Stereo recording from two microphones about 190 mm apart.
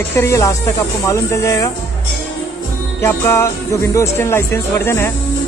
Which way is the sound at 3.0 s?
15° left (ahead or behind).